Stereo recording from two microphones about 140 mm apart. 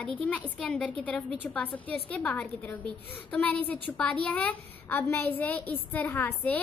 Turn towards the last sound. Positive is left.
turn(degrees=10)  # may be behind; listen again after turning